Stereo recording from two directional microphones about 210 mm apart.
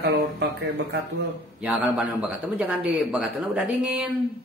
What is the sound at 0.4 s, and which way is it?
Music, 55° right (ahead or behind).